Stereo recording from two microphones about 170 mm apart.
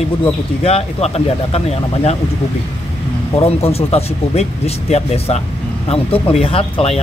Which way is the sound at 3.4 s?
35° left (ahead or behind).